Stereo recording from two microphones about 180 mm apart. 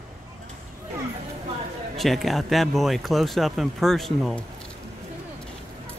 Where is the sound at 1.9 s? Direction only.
Centre (ahead or behind).